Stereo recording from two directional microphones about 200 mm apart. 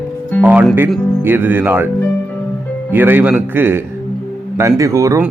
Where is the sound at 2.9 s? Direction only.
10° right (ahead or behind).